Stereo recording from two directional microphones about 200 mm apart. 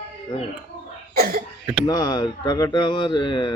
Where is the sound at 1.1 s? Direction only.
50° right (ahead or behind).